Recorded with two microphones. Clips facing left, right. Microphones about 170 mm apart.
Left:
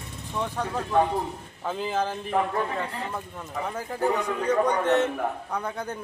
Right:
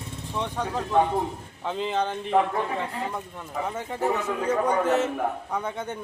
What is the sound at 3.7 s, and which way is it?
A man's voice, centre (ahead or behind).